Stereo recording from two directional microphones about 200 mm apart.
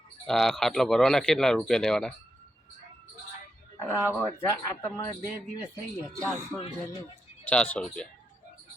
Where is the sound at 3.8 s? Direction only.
10° left (ahead or behind).